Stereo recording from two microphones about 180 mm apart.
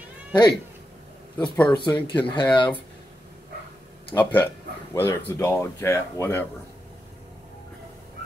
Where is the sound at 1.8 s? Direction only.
10° left (ahead or behind).